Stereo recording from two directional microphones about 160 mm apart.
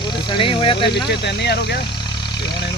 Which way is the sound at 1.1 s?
90° left.